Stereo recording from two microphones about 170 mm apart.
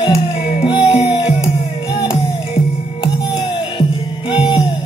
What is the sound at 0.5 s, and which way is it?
Music, 35° left (ahead or behind).